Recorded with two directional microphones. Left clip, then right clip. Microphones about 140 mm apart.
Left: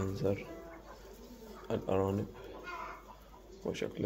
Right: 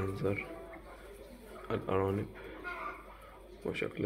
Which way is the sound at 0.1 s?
25° left (ahead or behind).